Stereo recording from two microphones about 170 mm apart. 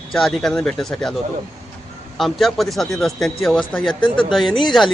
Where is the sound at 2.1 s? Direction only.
Centre (ahead or behind).